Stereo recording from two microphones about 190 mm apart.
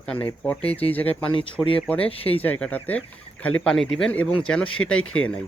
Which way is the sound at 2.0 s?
30° left (ahead or behind).